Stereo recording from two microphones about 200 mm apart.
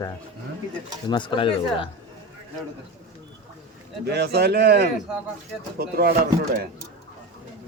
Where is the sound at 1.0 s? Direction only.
25° left (ahead or behind).